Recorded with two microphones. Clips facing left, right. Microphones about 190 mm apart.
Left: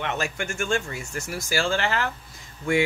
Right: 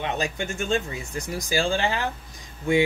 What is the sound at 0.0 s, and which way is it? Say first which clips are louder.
Speech: right 1 dB; 15° right (ahead or behind).